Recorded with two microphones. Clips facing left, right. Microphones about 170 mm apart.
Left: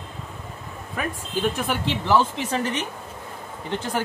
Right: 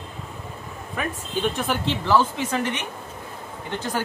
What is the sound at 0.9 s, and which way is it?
Speech, centre (ahead or behind).